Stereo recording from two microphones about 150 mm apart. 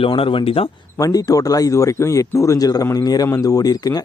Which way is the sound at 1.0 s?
25° left (ahead or behind).